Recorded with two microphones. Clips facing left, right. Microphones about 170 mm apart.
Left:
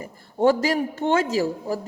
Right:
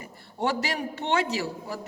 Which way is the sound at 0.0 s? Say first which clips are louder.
Left 9 dB; 45° left (ahead or behind).